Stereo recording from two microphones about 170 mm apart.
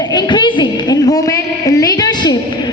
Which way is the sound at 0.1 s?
25° left (ahead or behind).